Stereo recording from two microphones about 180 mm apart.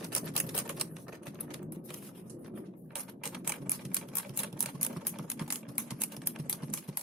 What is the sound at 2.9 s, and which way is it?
Mechanisms, 5° right (ahead or behind).